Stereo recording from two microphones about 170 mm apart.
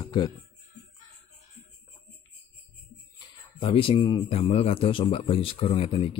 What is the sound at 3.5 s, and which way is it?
A man's voice, 30° left (ahead or behind).